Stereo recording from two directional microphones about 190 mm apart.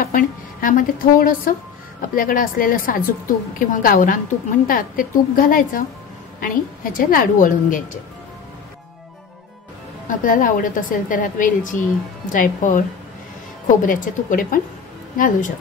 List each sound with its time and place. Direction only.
0.0 s a sound: 45° left (ahead or behind)
2.0 s a woman's voice: 45° left (ahead or behind)
10.0 s a woman's voice: 45° left (ahead or behind)
13.8 s a woman's voice: 45° left (ahead or behind)